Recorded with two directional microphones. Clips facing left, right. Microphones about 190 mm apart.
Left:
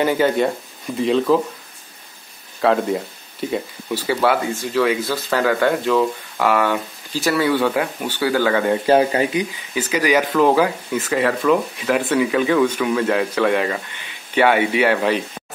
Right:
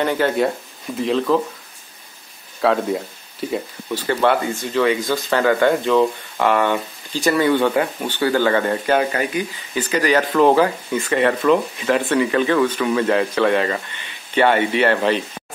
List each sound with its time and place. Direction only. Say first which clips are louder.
0.0 s speech: left 1 dB; centre (ahead or behind)
2.6 s speech: left 1 dB; centre (ahead or behind)
8.8 s a man's voice: left 3 dB; 30° left (ahead or behind)
9.8 s speech: even; 10° left (ahead or behind)